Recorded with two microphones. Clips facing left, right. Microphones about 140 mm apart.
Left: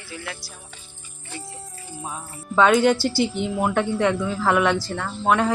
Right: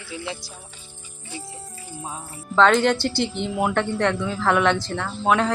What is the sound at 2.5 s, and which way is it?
Speech, 10° left (ahead or behind).